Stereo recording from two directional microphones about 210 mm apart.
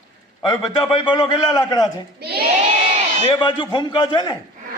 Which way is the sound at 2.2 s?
50° right (ahead or behind).